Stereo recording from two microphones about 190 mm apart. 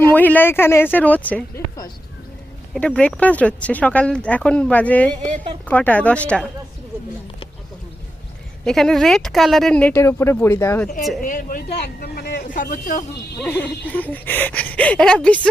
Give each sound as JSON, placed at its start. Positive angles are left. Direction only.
{"t": 0.1, "sound": "speech", "side_deg": 10}
{"t": 2.7, "sound": "speech", "side_deg": 5}
{"t": 8.6, "sound": "speech", "side_deg": 0}
{"t": 11.2, "sound": "a man's voice", "side_deg": 45}
{"t": 12.5, "sound": "a man's voice", "side_deg": 45}
{"t": 13.4, "sound": "speech", "side_deg": 5}